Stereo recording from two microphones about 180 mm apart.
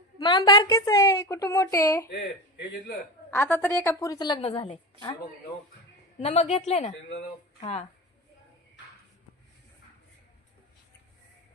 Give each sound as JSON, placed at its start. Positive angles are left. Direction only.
{"t": 0.2, "sound": "a woman's voice", "side_deg": 25}
{"t": 2.0, "sound": "speech", "side_deg": 65}
{"t": 3.3, "sound": "a woman's voice", "side_deg": 10}
{"t": 6.2, "sound": "a woman's voice", "side_deg": 35}